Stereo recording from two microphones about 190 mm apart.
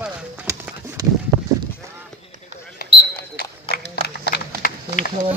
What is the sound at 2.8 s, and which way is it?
Basketball bounce, 55° left (ahead or behind).